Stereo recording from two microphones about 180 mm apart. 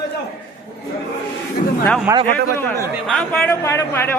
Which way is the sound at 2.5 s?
10° left (ahead or behind).